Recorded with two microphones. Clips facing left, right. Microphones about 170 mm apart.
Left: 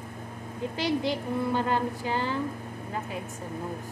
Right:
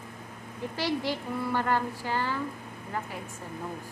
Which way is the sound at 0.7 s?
20° left (ahead or behind).